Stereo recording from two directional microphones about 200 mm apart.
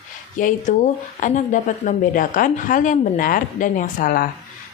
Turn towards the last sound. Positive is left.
turn(degrees=45)  # may be behind; listen again after turning